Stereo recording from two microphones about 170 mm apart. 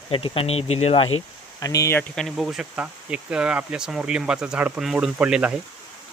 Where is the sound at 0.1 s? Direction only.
30° left (ahead or behind).